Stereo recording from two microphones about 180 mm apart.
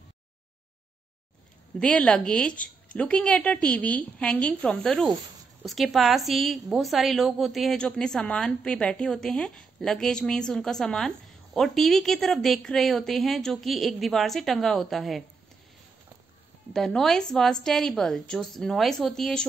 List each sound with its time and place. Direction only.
1.8 s a woman's voice: 5° left (ahead or behind)
16.7 s a woman's voice: centre (ahead or behind)